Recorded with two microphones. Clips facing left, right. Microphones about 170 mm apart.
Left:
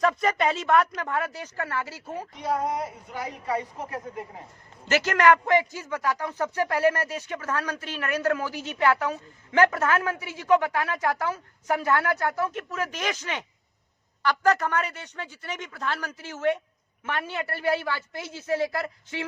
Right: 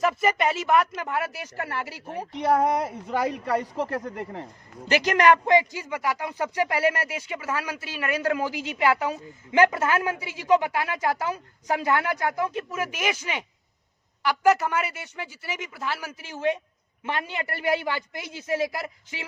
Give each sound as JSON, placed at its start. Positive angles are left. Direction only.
{"t": 0.0, "sound": "a man's voice", "side_deg": -5}
{"t": 2.3, "sound": "a woman's voice", "side_deg": -70}
{"t": 4.9, "sound": "a man's voice", "side_deg": -15}